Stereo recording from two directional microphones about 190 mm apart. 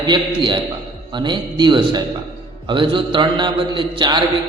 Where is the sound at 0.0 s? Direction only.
25° right (ahead or behind).